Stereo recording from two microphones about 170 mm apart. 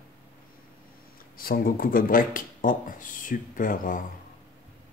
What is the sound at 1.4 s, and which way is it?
Speech, 60° left (ahead or behind).